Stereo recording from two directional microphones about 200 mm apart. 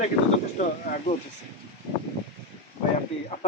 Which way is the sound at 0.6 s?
40° left (ahead or behind).